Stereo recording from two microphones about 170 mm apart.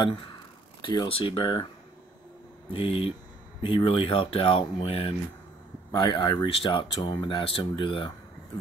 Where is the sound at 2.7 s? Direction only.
35° left (ahead or behind).